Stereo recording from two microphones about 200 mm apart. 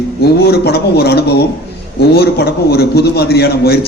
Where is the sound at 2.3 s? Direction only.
50° left (ahead or behind).